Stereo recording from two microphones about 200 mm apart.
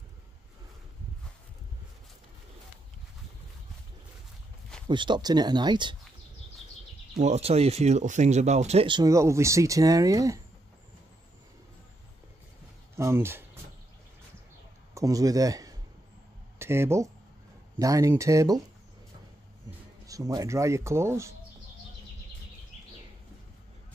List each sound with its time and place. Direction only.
4.8 s speech: 25° right (ahead or behind)
7.2 s speech: 35° right (ahead or behind); by 10.4 s 15° right (ahead or behind)
12.9 s speech: 10° right (ahead or behind)
15.0 s speech: 15° right (ahead or behind)
20.1 s speech: 15° right (ahead or behind)